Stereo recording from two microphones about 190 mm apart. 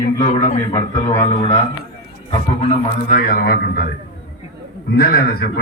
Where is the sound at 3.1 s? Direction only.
50° left (ahead or behind).